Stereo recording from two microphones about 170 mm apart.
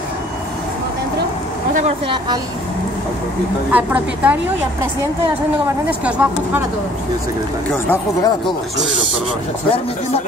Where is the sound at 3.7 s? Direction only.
10° right (ahead or behind).